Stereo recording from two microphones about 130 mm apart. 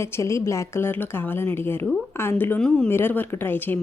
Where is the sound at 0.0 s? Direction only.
20° left (ahead or behind).